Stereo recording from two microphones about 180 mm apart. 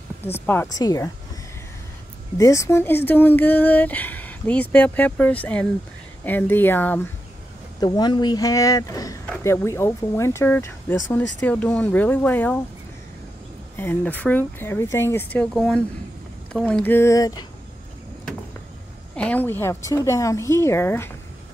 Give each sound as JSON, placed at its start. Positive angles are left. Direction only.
{"t": 0.3, "sound": "speech", "side_deg": 10}
{"t": 2.3, "sound": "speech", "side_deg": 15}
{"t": 7.8, "sound": "speech", "side_deg": 20}
{"t": 13.7, "sound": "speech", "side_deg": 10}
{"t": 19.1, "sound": "speech", "side_deg": 10}